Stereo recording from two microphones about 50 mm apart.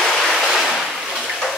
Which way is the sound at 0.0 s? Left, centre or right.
Centre.